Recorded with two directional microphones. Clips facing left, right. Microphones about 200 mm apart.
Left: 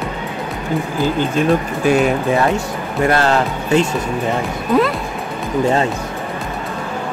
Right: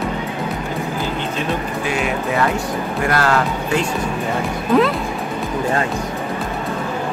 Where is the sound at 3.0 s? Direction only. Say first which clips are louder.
Left 4 dB; 25° left (ahead or behind).